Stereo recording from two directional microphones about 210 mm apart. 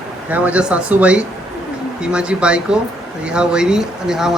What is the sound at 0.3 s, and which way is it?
A man's voice, 5° right (ahead or behind).